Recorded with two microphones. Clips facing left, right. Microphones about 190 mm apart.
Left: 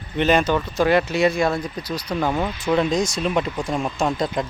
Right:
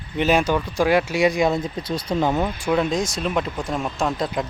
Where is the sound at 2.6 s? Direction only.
5° right (ahead or behind).